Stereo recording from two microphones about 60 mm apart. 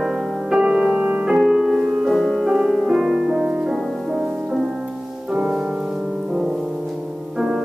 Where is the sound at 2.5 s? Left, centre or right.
Centre.